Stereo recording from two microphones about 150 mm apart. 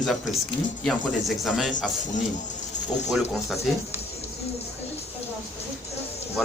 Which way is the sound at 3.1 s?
Centre (ahead or behind).